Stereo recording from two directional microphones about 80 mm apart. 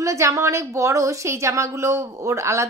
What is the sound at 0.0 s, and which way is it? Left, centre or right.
A woman's voice, right.